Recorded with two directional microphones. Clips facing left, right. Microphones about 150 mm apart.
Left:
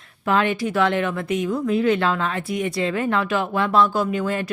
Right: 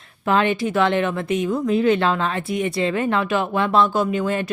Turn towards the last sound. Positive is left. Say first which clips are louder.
# right 2 dB
turn(degrees=-25)  # may be behind; listen again after turning